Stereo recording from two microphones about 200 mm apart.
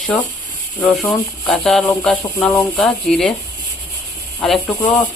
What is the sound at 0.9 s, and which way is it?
Speech, 5° left (ahead or behind).